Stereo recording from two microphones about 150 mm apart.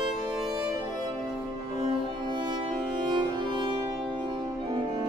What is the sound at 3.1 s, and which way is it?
Music, 30° right (ahead or behind).